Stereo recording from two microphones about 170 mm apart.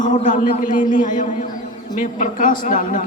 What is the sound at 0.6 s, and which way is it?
A man's voice, 55° left (ahead or behind).